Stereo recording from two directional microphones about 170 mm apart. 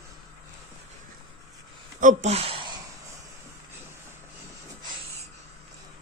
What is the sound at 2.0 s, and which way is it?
Speech, 45° right (ahead or behind).